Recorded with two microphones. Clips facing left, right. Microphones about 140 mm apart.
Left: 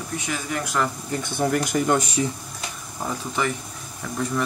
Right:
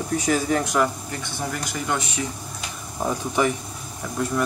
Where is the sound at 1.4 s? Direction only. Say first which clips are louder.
Left 9 dB; 50° left (ahead or behind).